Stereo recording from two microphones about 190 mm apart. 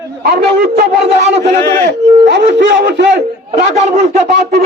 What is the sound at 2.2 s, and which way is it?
Speech, 65° right (ahead or behind).